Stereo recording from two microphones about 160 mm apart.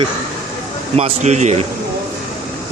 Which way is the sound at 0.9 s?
45° right (ahead or behind).